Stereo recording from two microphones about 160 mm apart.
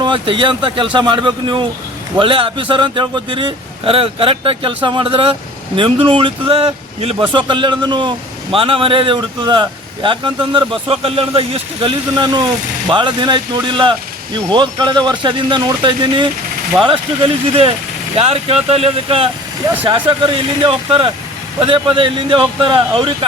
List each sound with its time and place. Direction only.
0.0 s speech: 30° right (ahead or behind)